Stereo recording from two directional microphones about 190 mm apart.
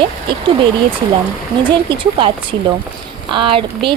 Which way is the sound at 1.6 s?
25° right (ahead or behind).